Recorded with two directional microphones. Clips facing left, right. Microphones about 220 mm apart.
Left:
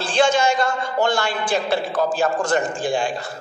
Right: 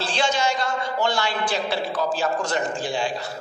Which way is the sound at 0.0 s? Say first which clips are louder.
Left 6 dB; 50° left (ahead or behind).